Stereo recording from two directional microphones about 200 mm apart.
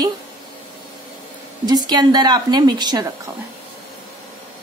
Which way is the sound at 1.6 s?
20° right (ahead or behind).